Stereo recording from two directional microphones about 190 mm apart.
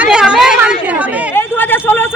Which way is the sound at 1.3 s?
10° left (ahead or behind).